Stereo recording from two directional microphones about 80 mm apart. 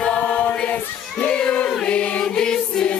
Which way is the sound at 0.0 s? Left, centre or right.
Centre.